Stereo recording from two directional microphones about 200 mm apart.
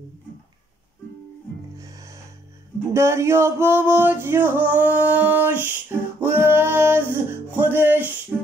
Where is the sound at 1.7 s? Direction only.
15° right (ahead or behind).